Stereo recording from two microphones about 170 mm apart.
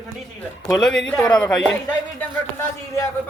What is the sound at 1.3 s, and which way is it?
Speech, 5° left (ahead or behind).